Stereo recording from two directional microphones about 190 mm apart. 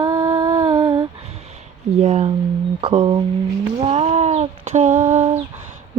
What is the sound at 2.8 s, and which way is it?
Mantra, 30° right (ahead or behind).